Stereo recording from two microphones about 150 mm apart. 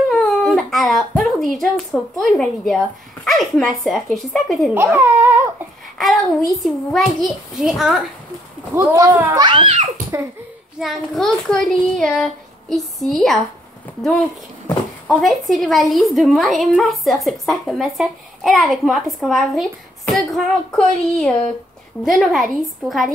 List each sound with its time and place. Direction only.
0.1 s baby cry: centre (ahead or behind)
0.6 s a woman's voice: centre (ahead or behind)
4.9 s speech: 10° right (ahead or behind)
5.9 s a woman's voice: centre (ahead or behind)
8.7 s speech: 20° right (ahead or behind)
9.5 s a child's voice: 35° right (ahead or behind)
10.8 s a woman's voice: centre (ahead or behind)
15.0 s a woman's voice: centre (ahead or behind)